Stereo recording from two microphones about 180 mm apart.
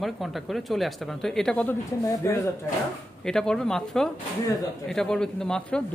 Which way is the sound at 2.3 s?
15° left (ahead or behind).